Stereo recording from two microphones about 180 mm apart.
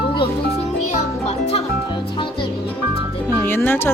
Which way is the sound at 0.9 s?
40° left (ahead or behind).